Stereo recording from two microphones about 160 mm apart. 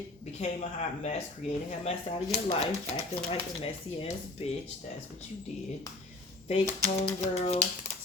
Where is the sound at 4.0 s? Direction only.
40° left (ahead or behind).